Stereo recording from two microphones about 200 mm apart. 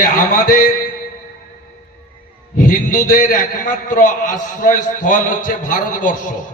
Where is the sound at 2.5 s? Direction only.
40° left (ahead or behind).